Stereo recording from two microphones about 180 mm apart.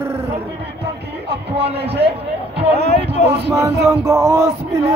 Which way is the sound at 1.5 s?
35° right (ahead or behind).